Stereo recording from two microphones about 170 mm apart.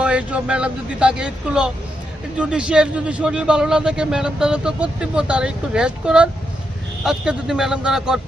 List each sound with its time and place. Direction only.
0.0 s a man's voice: 5° right (ahead or behind)